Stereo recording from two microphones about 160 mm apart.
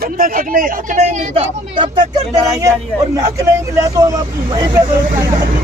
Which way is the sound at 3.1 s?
20° right (ahead or behind).